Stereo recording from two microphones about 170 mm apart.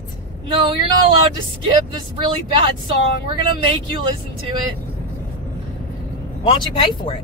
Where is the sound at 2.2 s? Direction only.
30° right (ahead or behind).